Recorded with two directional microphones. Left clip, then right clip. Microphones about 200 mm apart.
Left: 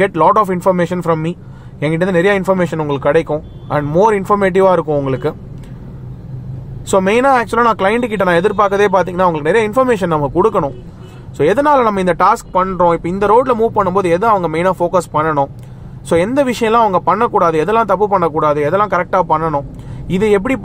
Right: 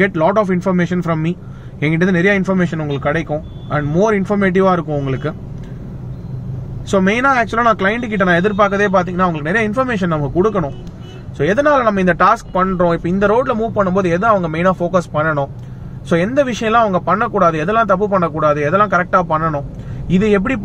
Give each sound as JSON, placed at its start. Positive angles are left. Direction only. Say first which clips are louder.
{"t": 0.0, "sound": "speech", "louder": "left 3 dB", "side_deg": 40}
{"t": 7.0, "sound": "speech", "louder": "left 2 dB", "side_deg": 45}